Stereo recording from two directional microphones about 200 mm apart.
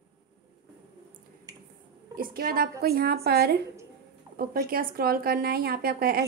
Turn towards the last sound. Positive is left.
turn(degrees=-50)  # may be behind; listen again after turning